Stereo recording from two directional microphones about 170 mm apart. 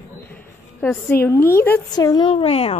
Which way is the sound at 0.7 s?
15° left (ahead or behind).